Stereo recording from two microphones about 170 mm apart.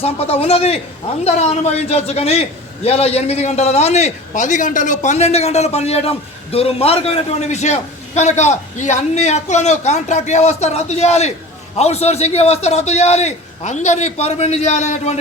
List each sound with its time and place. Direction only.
0.0 s a man's voice: 35° left (ahead or behind)